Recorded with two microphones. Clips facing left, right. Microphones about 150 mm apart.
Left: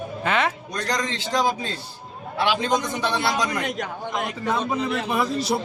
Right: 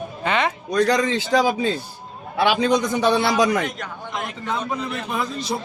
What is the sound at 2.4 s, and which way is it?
Speech, 80° right.